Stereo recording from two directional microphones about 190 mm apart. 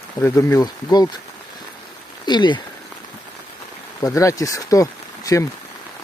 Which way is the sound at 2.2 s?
25° left (ahead or behind).